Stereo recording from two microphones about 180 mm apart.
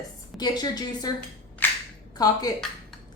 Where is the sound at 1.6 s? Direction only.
10° left (ahead or behind).